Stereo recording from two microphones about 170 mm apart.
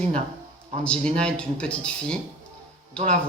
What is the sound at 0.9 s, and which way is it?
Speech, 5° left (ahead or behind).